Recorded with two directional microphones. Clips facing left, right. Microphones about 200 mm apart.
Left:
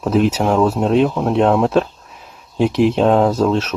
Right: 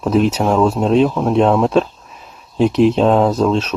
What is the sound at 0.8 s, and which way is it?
Speech, 10° left (ahead or behind).